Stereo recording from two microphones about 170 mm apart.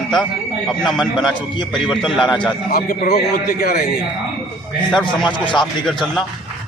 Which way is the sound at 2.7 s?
55° left (ahead or behind).